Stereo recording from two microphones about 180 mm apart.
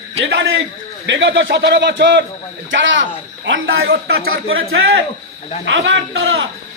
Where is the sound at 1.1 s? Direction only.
90° right; by 2.3 s 70° right (ahead or behind).